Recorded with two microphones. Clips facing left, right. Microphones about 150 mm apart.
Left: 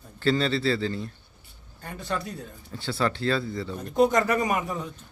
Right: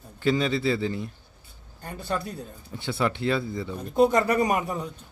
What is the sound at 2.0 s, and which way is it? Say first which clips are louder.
Speech: right 1 dB; 30° right (ahead or behind).